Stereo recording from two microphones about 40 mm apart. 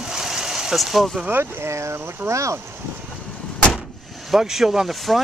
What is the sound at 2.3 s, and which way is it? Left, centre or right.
Speech, right.